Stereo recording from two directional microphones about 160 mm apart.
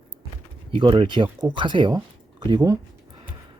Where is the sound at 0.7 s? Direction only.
30° right (ahead or behind).